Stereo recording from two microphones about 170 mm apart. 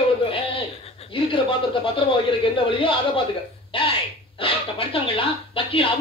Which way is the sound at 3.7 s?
30° left (ahead or behind).